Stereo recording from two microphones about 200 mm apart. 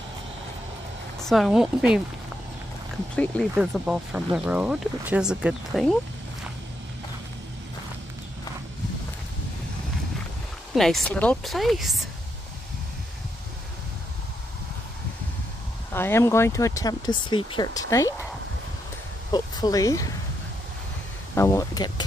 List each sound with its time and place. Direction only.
1.2 s speech: centre (ahead or behind)
3.5 s speech: 5° right (ahead or behind)
10.7 s speech: centre (ahead or behind)
15.9 s speech: 10° left (ahead or behind)
19.3 s speech: 20° left (ahead or behind)
21.4 s speech: 15° left (ahead or behind)